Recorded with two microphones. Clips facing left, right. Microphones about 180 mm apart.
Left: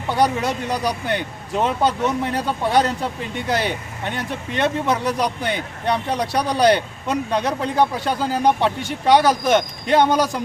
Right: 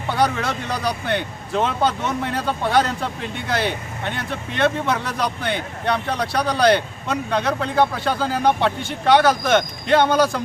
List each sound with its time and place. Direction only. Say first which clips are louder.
0.1 s speech: left 2 dB; 15° left (ahead or behind)
4.3 s speech: right 2 dB; 15° left (ahead or behind)